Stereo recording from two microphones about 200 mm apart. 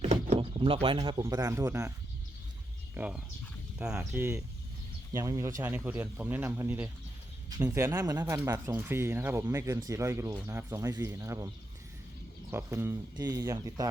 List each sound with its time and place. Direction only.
0.0 s speech: 35° right (ahead or behind); by 1.9 s 15° right (ahead or behind)
2.9 s speech: 5° right (ahead or behind)
5.1 s speech: 15° right (ahead or behind)